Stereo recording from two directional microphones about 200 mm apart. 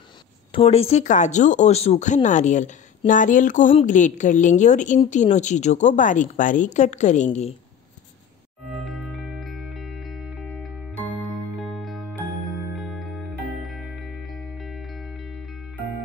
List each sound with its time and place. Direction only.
0.5 s speech: 30° left (ahead or behind)
8.7 s music: centre (ahead or behind)